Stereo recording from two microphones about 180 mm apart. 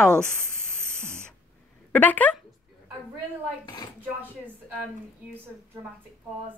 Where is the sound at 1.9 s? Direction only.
10° left (ahead or behind).